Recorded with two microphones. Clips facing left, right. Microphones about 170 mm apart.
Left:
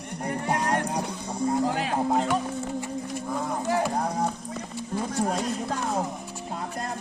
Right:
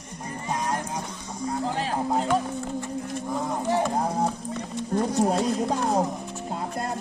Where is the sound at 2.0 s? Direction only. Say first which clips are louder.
Right 1 dB; centre (ahead or behind).